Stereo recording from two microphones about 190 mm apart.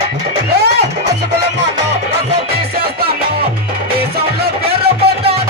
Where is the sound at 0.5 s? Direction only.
60° right (ahead or behind).